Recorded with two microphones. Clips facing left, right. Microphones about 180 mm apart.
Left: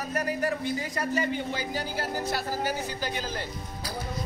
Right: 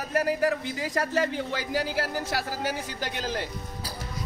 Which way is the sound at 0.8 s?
90° right.